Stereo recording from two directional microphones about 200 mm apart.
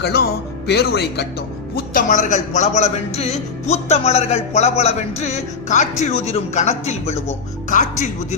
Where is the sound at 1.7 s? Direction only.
40° left (ahead or behind).